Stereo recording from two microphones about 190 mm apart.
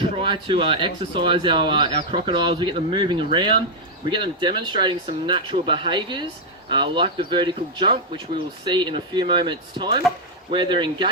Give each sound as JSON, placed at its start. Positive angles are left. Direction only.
{"t": 0.0, "sound": "speech", "side_deg": -25}